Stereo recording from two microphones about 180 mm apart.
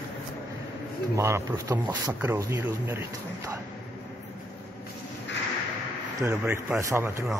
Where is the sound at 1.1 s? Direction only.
15° right (ahead or behind).